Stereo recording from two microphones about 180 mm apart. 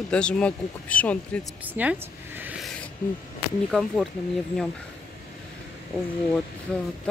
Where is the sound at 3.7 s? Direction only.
Centre (ahead or behind).